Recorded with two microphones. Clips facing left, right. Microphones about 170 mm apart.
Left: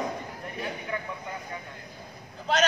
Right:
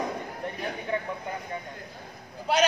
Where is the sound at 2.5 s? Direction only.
10° right (ahead or behind).